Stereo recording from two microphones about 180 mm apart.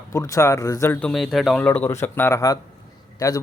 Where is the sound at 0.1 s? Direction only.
15° left (ahead or behind).